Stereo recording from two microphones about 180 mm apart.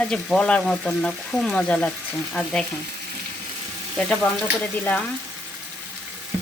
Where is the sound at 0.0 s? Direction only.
5° left (ahead or behind).